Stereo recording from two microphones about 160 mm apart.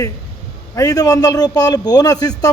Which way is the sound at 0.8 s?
20° left (ahead or behind).